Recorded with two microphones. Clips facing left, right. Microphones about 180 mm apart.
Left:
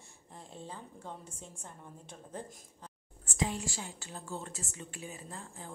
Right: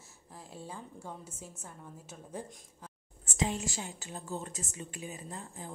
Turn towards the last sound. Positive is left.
turn(degrees=-15)  # may be behind; listen again after turning